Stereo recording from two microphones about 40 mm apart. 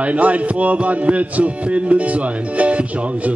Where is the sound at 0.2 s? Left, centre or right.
Right.